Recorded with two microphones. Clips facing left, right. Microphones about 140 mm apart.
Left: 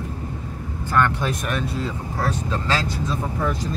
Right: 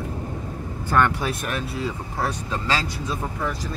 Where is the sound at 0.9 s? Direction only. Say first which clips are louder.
Even; 15° right (ahead or behind).